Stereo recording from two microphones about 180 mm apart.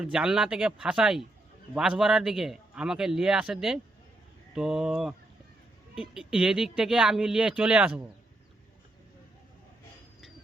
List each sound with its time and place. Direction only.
0.0 s speech: 5° right (ahead or behind)